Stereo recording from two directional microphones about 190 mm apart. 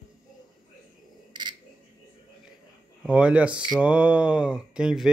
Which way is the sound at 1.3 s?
25° right (ahead or behind).